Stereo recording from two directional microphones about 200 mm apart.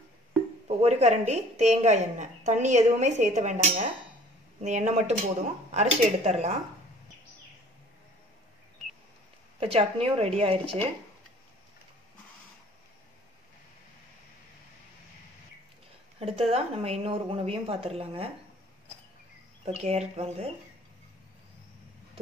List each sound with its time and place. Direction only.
0.7 s a woman's voice: 30° right (ahead or behind)
8.8 s a sound: centre (ahead or behind)
9.6 s a woman's voice: 30° right (ahead or behind)
16.2 s a woman's voice: 30° right (ahead or behind)
19.6 s a woman's voice: 30° right (ahead or behind)